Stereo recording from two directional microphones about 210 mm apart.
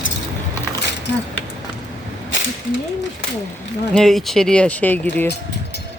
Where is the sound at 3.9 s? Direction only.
Centre (ahead or behind).